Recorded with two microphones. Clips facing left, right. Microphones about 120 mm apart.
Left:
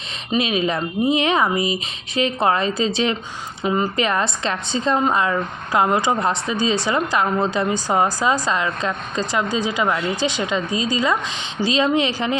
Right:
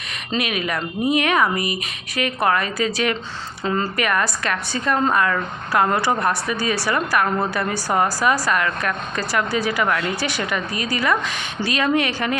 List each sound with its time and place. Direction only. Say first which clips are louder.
0.3 s speech: left 4 dB; 25° left (ahead or behind)